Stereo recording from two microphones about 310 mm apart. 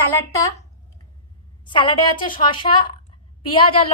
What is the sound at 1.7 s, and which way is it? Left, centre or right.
A woman's voice, centre.